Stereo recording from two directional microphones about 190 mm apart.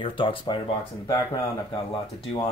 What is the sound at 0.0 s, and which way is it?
Speech, 25° left (ahead or behind).